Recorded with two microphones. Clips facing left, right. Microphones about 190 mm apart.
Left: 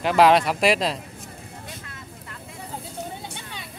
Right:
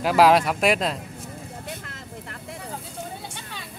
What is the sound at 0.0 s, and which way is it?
Speech, 5° right (ahead or behind).